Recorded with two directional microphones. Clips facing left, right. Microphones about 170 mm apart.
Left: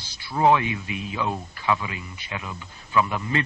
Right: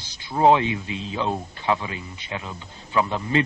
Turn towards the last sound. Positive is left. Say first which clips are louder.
# right 2 dB
turn(degrees=-25)  # may be behind; listen again after turning